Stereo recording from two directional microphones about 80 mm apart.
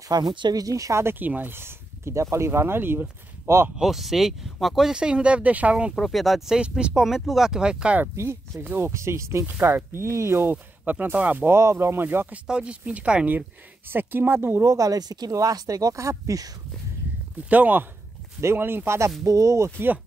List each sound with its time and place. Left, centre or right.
0.1 s speech: right
0.6 s speech: right
1.0 s speech: right
3.7 s speech: centre
5.9 s speech: centre
8.2 s speech: right
12.4 s speech: centre
13.8 s speech: right
14.7 s speech: right
17.5 s speech: right